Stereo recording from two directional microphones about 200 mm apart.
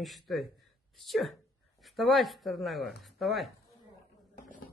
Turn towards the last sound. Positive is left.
turn(degrees=0)  # may be behind; listen again after turning